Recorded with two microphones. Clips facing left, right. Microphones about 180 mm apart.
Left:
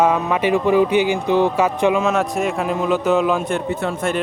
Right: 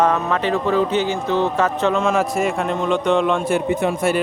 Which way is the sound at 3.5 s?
15° right (ahead or behind).